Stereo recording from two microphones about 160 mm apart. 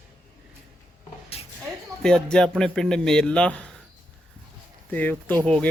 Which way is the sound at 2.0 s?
5° left (ahead or behind).